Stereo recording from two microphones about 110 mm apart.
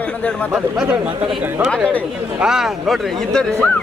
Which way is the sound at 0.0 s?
15° left (ahead or behind).